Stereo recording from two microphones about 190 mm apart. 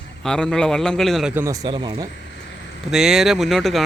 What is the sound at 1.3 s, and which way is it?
Speech, 15° right (ahead or behind).